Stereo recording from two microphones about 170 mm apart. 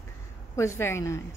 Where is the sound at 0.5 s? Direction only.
15° left (ahead or behind).